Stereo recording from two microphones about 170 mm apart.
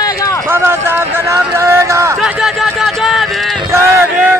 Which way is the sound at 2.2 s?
5° right (ahead or behind).